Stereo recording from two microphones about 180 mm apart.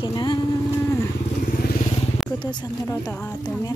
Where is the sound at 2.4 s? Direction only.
25° left (ahead or behind).